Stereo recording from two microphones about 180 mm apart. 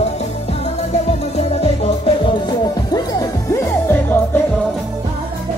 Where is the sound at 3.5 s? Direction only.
15° left (ahead or behind).